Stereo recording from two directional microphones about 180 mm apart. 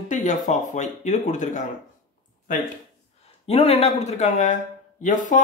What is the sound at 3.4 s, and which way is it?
Speech, 35° left (ahead or behind).